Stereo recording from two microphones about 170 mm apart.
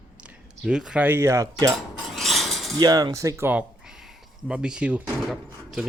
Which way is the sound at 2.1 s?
Centre (ahead or behind).